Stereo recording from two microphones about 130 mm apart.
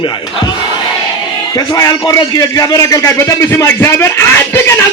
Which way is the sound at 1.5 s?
25° left (ahead or behind).